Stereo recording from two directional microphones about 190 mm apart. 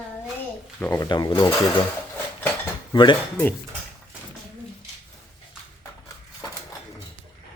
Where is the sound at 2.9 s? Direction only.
25° left (ahead or behind).